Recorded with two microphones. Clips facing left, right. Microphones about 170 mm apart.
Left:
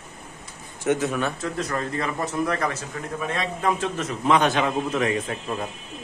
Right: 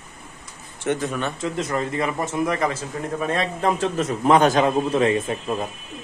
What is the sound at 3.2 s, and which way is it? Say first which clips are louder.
A man's voice: right 3 dB; 35° right (ahead or behind).